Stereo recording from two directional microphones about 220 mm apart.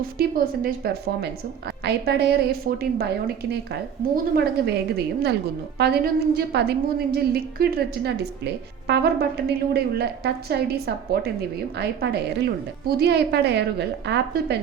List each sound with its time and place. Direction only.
0.2 s a woman's voice: 40° right (ahead or behind)
1.8 s a woman's voice: 45° right (ahead or behind)